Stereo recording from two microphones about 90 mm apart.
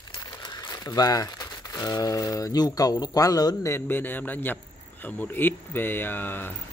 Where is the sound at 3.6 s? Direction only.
25° left (ahead or behind).